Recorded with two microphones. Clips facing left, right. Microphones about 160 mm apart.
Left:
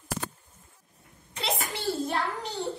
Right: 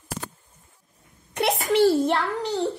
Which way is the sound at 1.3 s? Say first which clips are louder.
Right 10 dB; 65° right (ahead or behind).